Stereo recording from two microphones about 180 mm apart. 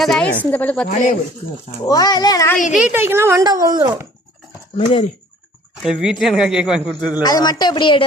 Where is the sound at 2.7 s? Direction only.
10° right (ahead or behind).